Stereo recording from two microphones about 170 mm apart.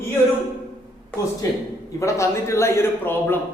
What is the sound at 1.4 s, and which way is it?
A man's voice, 20° left (ahead or behind).